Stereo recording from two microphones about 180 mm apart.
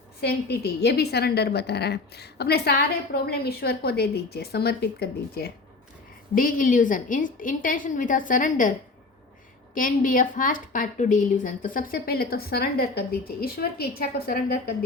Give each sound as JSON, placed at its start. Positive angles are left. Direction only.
{"t": 0.2, "sound": "a woman's voice", "side_deg": 65}
{"t": 6.3, "sound": "a woman's voice", "side_deg": 50}
{"t": 9.7, "sound": "a woman's voice", "side_deg": 50}